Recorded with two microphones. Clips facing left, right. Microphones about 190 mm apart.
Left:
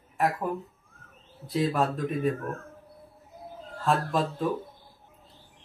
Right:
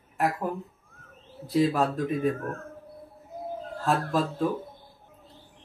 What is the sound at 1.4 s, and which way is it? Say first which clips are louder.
Speech: right 3 dB; centre (ahead or behind).